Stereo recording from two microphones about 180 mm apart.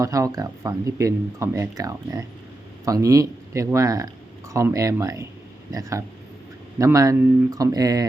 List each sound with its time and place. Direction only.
0.0 s speech: 20° right (ahead or behind)
6.7 s speech: 15° right (ahead or behind)